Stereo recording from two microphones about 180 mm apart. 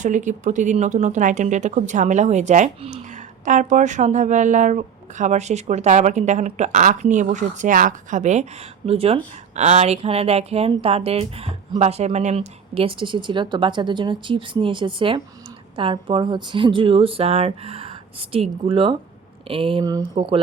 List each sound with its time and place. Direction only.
0.0 s a woman's voice: 45° right (ahead or behind); by 20.4 s 30° right (ahead or behind)